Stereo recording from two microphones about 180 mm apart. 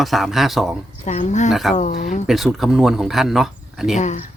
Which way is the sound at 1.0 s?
40° left (ahead or behind).